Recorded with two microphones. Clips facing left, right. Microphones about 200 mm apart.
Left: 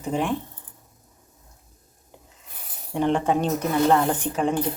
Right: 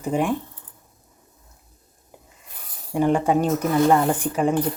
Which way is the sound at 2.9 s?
10° right (ahead or behind).